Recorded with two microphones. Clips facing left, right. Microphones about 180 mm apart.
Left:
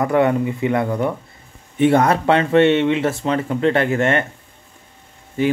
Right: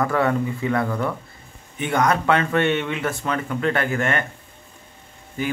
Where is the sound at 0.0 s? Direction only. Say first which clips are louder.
Left 4 dB; 20° left (ahead or behind).